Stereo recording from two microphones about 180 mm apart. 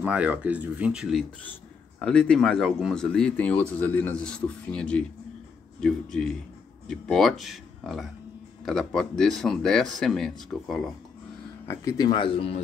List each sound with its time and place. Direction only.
0.0 s speech: 10° right (ahead or behind)
1.4 s a man's voice: 5° left (ahead or behind)
11.6 s speech: 15° left (ahead or behind)